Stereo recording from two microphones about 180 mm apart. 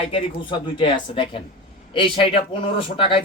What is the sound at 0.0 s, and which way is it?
A man's voice, 30° left (ahead or behind).